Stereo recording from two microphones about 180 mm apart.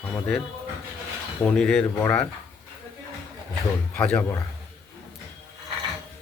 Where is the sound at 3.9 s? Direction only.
5° left (ahead or behind).